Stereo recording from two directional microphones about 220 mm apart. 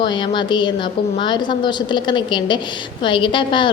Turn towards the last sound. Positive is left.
turn(degrees=20)  # may be behind; listen again after turning